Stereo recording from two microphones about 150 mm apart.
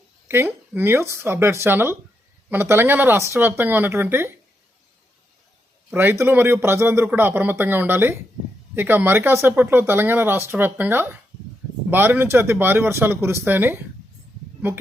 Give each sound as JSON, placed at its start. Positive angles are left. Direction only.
{"t": 0.3, "sound": "speech", "side_deg": -15}
{"t": 5.9, "sound": "speech", "side_deg": -15}